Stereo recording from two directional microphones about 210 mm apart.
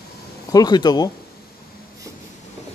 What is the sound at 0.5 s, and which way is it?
Speech, 20° left (ahead or behind).